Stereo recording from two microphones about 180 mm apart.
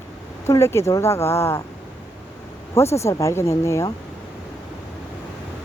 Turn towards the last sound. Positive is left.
turn(degrees=15)  # may be behind; listen again after turning